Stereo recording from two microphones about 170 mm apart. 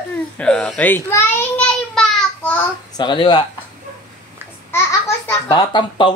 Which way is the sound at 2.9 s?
25° left (ahead or behind).